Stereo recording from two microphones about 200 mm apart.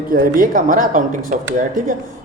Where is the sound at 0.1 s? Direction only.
45° right (ahead or behind).